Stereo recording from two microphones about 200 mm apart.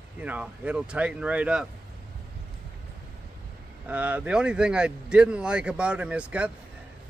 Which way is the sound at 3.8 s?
5° right (ahead or behind).